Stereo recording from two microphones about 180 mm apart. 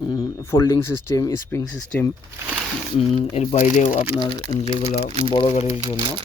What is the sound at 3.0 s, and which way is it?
Speech, 35° left (ahead or behind).